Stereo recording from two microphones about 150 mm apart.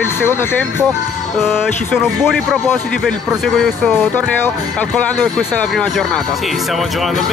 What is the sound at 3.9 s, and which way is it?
Speech, 15° left (ahead or behind).